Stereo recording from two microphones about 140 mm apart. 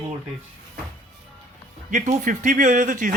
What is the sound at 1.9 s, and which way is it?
Speech, 60° right (ahead or behind).